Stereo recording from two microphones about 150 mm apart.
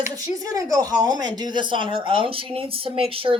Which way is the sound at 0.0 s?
20° right (ahead or behind).